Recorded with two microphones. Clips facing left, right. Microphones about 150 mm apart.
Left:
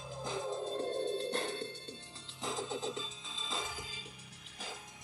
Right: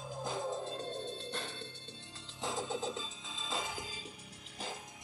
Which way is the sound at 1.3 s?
50° left (ahead or behind).